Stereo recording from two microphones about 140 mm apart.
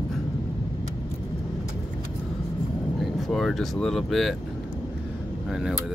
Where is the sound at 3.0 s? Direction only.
Centre (ahead or behind).